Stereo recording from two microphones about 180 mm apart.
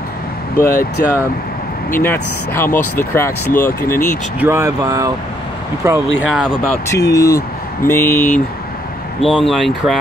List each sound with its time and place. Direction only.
0.7 s speech: 55° left (ahead or behind)
2.0 s speech: 10° left (ahead or behind)
4.4 s speech: 15° right (ahead or behind)
6.2 s speech: 5° right (ahead or behind)
6.9 s speech: 15° left (ahead or behind)
9.2 s speech: centre (ahead or behind)